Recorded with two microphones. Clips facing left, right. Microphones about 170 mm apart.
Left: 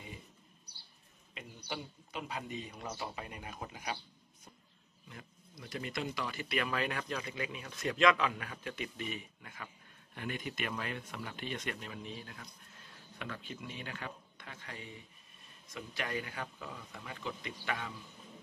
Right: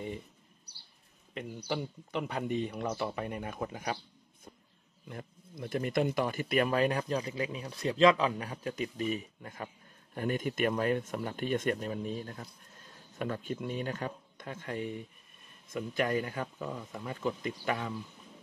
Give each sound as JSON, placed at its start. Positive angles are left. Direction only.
{"t": 1.7, "sound": "a man's voice", "side_deg": -65}
{"t": 5.0, "sound": "speech", "side_deg": -50}